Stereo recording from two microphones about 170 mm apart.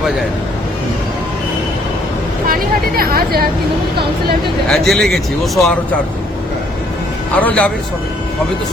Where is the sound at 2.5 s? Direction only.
60° right (ahead or behind).